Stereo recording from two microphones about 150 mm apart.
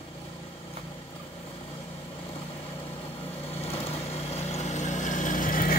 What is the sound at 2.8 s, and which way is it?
Vehicle, 40° left (ahead or behind).